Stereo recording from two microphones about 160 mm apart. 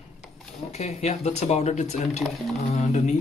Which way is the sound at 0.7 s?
45° left (ahead or behind).